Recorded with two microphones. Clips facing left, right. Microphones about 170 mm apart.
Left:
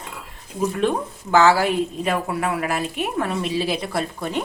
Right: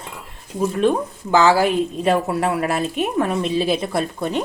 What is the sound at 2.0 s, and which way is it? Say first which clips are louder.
Speech: right 5 dB; 30° right (ahead or behind).